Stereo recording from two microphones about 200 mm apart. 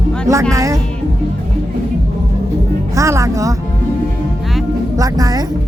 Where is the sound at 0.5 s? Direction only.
15° right (ahead or behind).